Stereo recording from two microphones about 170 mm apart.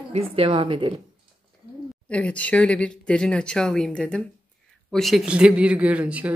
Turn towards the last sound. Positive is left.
turn(degrees=-10)  # may be behind; listen again after turning